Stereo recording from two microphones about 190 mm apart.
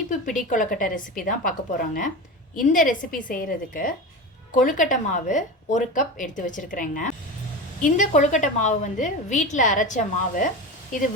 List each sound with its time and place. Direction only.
0.1 s a woman's voice: 45° left (ahead or behind)